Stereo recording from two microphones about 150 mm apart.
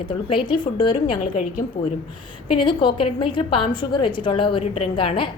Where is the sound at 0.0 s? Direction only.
35° left (ahead or behind).